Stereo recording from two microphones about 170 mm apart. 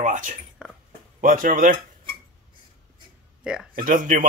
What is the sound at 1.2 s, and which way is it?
Speech, 55° right (ahead or behind).